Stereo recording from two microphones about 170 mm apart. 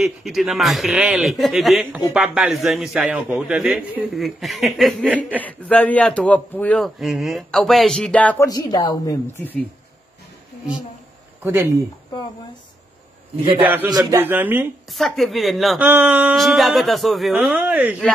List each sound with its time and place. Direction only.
0.0 s speech: centre (ahead or behind)
5.4 s a man's voice: 10° left (ahead or behind)
8.5 s speech: 20° left (ahead or behind)
11.4 s speech: 15° right (ahead or behind)
13.6 s speech: 10° right (ahead or behind)
13.8 s a man's voice: 20° right (ahead or behind)
14.2 s speech: 10° right (ahead or behind)
14.9 s speech: centre (ahead or behind)